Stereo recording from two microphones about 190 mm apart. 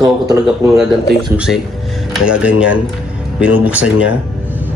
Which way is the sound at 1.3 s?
5° right (ahead or behind).